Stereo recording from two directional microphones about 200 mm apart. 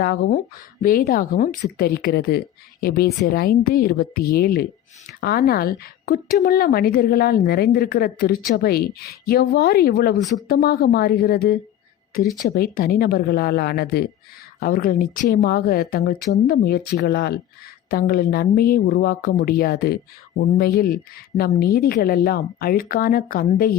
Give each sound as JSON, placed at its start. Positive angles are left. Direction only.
{"t": 0.0, "sound": "a woman's voice", "side_deg": 50}
{"t": 12.2, "sound": "speech", "side_deg": 0}
{"t": 12.5, "sound": "a woman's voice", "side_deg": 45}